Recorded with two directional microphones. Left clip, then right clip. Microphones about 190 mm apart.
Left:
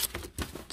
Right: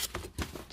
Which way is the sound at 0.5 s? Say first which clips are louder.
Left 1 dB; 25° left (ahead or behind).